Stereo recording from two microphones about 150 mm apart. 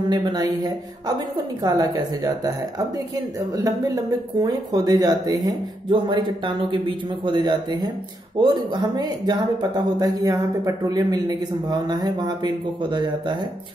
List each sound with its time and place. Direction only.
0.1 s speech: 30° right (ahead or behind)